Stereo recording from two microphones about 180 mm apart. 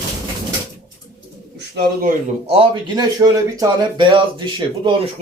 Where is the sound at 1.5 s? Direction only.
65° right (ahead or behind).